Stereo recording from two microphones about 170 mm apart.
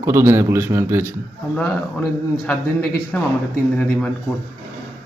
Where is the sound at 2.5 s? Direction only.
5° left (ahead or behind).